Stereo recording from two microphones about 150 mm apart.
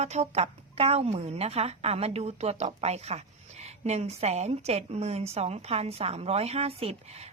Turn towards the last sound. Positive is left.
turn(degrees=-40)  # may be behind; listen again after turning